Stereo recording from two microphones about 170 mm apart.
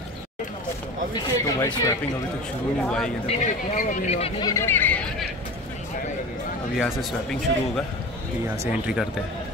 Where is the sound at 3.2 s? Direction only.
50° left (ahead or behind).